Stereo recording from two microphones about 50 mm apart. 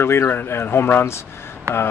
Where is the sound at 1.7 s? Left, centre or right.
Right.